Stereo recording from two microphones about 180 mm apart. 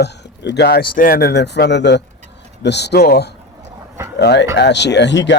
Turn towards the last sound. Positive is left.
turn(degrees=80)